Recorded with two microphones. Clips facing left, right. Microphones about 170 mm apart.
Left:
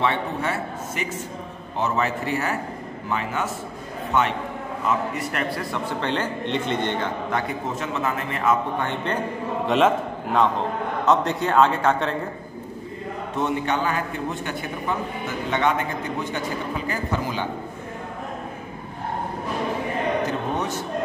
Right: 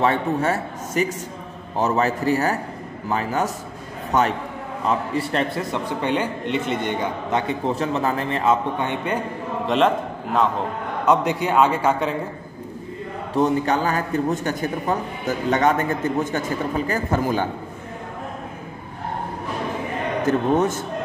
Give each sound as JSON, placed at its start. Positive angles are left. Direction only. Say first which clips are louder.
{"t": 0.0, "sound": "a man's voice", "louder": "right 4 dB", "side_deg": -40}
{"t": 4.8, "sound": "a man's voice", "louder": "right 2 dB", "side_deg": -30}
{"t": 7.2, "sound": "a man's voice", "louder": "right 4 dB", "side_deg": -25}
{"t": 8.7, "sound": "a man's voice", "louder": "right 2 dB", "side_deg": -15}
{"t": 9.7, "sound": "a man's voice", "louder": "even", "side_deg": 0}
{"t": 11.1, "sound": "a man's voice", "louder": "right 2 dB", "side_deg": -10}
{"t": 13.3, "sound": "a man's voice", "louder": "right 5 dB", "side_deg": -35}
{"t": 20.2, "sound": "a man's voice", "louder": "right 7 dB", "side_deg": -50}